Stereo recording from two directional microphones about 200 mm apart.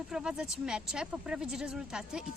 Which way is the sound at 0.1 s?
5° right (ahead or behind).